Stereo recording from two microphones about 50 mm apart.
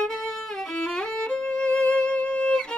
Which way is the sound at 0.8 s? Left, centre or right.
Centre.